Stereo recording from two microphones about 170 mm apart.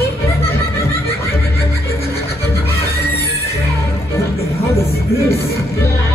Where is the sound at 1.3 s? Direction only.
15° left (ahead or behind).